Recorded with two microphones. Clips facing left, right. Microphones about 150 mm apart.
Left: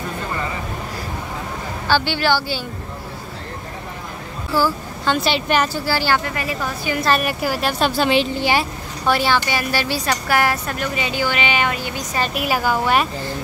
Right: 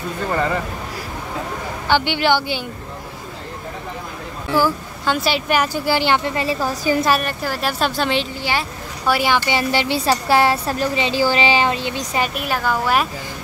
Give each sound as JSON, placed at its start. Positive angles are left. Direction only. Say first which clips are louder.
{"t": 1.9, "sound": "speech", "louder": "right 1 dB", "side_deg": -20}
{"t": 4.6, "sound": "speech", "louder": "right 1 dB", "side_deg": -10}
{"t": 5.9, "sound": "a woman's voice", "louder": "right 2 dB", "side_deg": -20}
{"t": 7.2, "sound": "speech", "louder": "left 2 dB", "side_deg": 5}
{"t": 8.4, "sound": "speech", "louder": "left 4 dB", "side_deg": 15}
{"t": 9.0, "sound": "speech", "louder": "even", "side_deg": -10}
{"t": 9.5, "sound": "a woman's voice", "louder": "right 3 dB", "side_deg": -25}
{"t": 12.4, "sound": "speech", "louder": "left 1 dB", "side_deg": 5}